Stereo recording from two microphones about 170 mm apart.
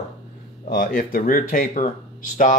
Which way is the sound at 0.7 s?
55° left (ahead or behind).